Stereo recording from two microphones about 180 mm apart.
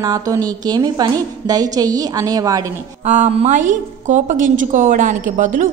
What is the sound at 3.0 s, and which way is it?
A woman's voice, 40° right (ahead or behind).